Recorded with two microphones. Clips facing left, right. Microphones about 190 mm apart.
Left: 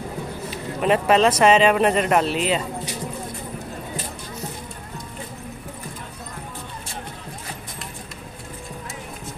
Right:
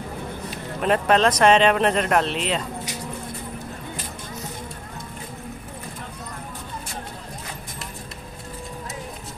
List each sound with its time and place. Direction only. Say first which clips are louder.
0.5 s speech: left 2 dB; 5° left (ahead or behind)